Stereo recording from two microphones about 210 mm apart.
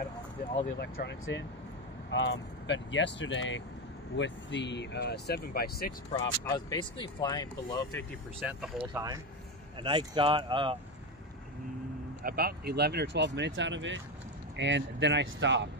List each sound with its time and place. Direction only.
0.7 s speech: 55° left (ahead or behind)
6.1 s speech: 20° left (ahead or behind)
8.5 s speech: centre (ahead or behind)
8.9 s speech: 20° right (ahead or behind)
12.2 s speech: 45° right (ahead or behind)